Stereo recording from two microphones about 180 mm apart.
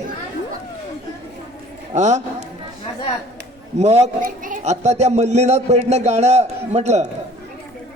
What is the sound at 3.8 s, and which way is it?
A man's voice, 40° right (ahead or behind).